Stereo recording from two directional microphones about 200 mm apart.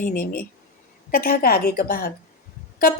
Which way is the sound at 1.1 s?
45° left (ahead or behind).